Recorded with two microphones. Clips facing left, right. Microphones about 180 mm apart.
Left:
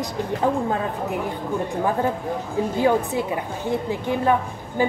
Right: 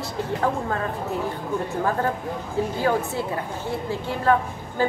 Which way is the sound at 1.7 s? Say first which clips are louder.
Left 2 dB; 15° left (ahead or behind).